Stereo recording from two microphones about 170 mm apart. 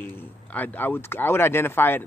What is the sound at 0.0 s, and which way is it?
A man's voice, 10° left (ahead or behind).